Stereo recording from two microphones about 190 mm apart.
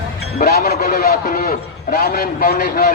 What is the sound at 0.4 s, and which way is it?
A man's voice, 55° left (ahead or behind).